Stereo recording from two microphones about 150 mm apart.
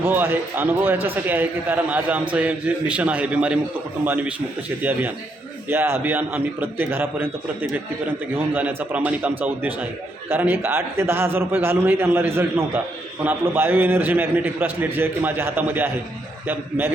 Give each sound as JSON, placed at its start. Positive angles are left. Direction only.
{"t": 0.0, "sound": "a man's voice", "side_deg": -15}